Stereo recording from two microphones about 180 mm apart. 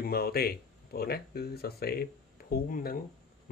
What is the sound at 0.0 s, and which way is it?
Speech, 60° left (ahead or behind).